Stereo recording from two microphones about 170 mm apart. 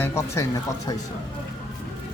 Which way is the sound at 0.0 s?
15° left (ahead or behind).